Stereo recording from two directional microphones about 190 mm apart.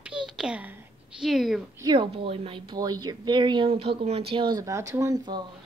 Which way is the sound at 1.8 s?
25° right (ahead or behind).